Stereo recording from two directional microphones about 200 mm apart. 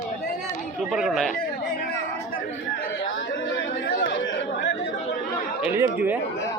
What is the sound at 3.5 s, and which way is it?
Chatter, 70° left (ahead or behind).